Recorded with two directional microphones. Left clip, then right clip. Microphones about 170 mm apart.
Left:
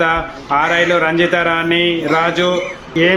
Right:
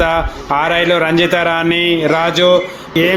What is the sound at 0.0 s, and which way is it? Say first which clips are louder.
Speech: right 1 dB; 20° right (ahead or behind).